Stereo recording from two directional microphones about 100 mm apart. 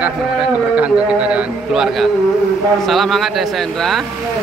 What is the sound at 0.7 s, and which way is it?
A man's voice, 10° right (ahead or behind).